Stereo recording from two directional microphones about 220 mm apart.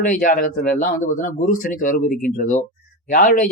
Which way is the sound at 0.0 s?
35° left (ahead or behind).